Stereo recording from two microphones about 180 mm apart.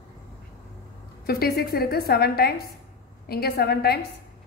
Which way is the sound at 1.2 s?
60° left (ahead or behind).